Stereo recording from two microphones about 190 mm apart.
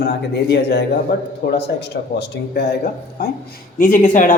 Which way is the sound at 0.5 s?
60° left (ahead or behind).